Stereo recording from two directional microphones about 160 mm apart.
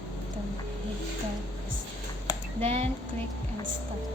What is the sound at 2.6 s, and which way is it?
Speech, 40° right (ahead or behind).